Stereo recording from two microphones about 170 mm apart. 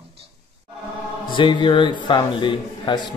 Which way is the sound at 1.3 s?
30° left (ahead or behind).